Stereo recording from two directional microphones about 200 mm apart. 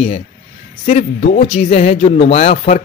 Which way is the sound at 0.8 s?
35° left (ahead or behind).